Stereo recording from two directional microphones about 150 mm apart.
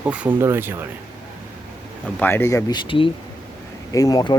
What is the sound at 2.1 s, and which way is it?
Speech, 15° left (ahead or behind).